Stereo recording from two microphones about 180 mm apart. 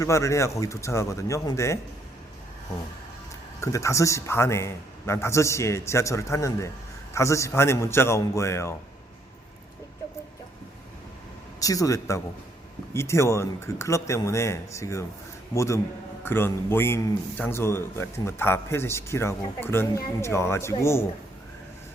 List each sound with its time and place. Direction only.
0.0 s a man's voice: 15° left (ahead or behind)
3.6 s a man's voice: 15° left (ahead or behind)
11.6 s a man's voice: 20° left (ahead or behind)